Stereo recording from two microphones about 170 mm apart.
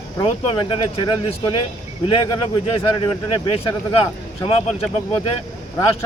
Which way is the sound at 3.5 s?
35° left (ahead or behind).